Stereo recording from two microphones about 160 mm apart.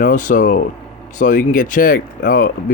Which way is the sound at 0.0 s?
55° left (ahead or behind).